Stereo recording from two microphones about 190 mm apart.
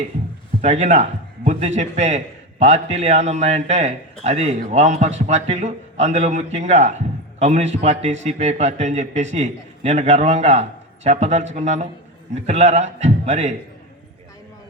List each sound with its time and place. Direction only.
0.6 s a man's voice: 35° right (ahead or behind)